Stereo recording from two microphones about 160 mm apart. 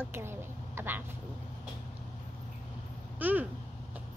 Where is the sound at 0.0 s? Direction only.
15° right (ahead or behind).